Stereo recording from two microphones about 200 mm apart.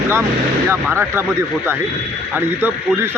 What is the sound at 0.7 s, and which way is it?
Speech, 10° right (ahead or behind).